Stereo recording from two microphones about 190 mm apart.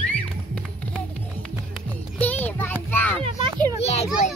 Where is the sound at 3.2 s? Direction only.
25° right (ahead or behind).